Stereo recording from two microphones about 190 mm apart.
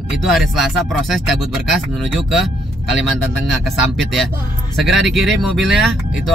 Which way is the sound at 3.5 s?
Centre (ahead or behind).